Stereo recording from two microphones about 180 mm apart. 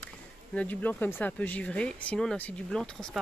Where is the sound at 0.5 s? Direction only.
10° left (ahead or behind).